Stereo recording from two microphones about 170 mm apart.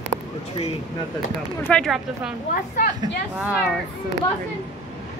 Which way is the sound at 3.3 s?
5° right (ahead or behind).